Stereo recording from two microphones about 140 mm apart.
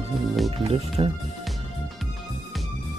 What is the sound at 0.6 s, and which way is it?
Speech, 45° right (ahead or behind).